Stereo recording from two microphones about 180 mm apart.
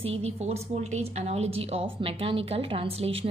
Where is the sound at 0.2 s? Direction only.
35° right (ahead or behind).